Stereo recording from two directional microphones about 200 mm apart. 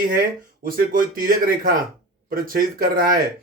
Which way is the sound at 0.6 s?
45° right (ahead or behind).